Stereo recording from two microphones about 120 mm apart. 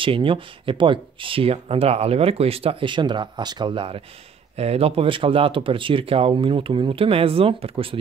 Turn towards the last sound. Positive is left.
turn(degrees=-50)  # may be behind; listen again after turning